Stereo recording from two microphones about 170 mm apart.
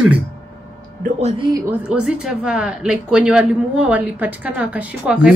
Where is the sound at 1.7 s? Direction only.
5° right (ahead or behind).